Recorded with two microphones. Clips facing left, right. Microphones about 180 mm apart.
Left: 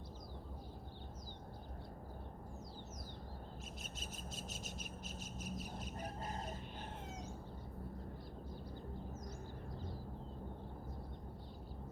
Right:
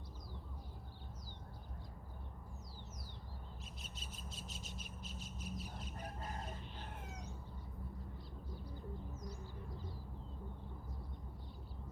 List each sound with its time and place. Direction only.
4.0 s bird: 45° left (ahead or behind)